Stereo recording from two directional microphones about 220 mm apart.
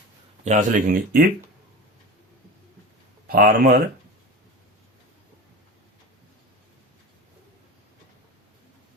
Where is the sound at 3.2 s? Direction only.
40° right (ahead or behind).